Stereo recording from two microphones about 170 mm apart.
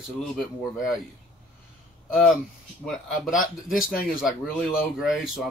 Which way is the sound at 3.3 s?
50° left (ahead or behind).